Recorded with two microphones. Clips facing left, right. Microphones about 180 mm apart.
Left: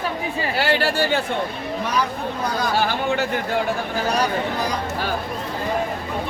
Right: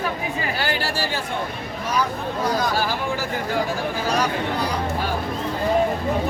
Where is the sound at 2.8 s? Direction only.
65° left (ahead or behind).